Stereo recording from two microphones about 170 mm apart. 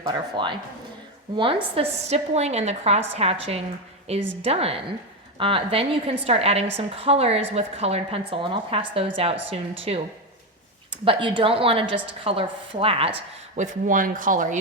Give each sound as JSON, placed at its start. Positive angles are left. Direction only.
{"t": 0.0, "sound": "speech", "side_deg": -30}
{"t": 1.7, "sound": "a woman's voice", "side_deg": -35}
{"t": 13.6, "sound": "speech", "side_deg": -50}